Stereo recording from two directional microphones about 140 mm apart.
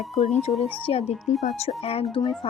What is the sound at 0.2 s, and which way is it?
A woman's voice, 50° left (ahead or behind).